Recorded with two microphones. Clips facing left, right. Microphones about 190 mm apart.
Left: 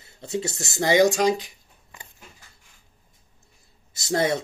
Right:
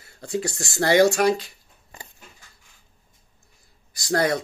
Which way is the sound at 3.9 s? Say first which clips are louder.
Right 1 dB; 25° left (ahead or behind).